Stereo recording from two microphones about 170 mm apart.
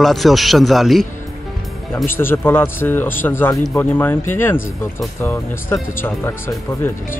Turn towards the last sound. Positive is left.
turn(degrees=15)  # may be behind; listen again after turning